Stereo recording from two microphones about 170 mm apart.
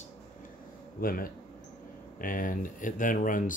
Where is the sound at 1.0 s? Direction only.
60° left (ahead or behind).